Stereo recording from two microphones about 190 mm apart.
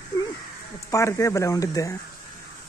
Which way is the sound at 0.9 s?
15° left (ahead or behind).